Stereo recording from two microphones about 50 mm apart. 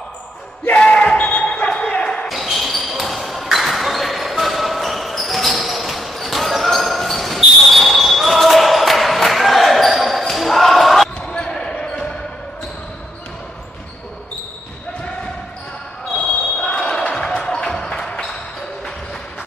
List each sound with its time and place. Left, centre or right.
0.7 s basketball bounce: centre
1.7 s a sound: centre
2.2 s basketball bounce: centre
11.2 s basketball bounce: centre
16.2 s basketball bounce: centre
17.1 s music: centre